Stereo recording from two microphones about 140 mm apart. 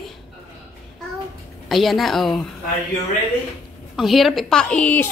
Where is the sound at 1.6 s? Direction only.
Centre (ahead or behind).